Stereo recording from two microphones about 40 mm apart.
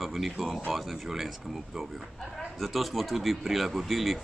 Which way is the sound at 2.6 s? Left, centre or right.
Centre.